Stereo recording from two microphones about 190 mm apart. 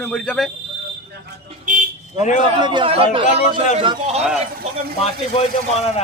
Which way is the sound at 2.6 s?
25° right (ahead or behind).